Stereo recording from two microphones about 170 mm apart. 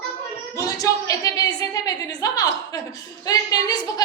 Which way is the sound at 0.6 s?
20° left (ahead or behind).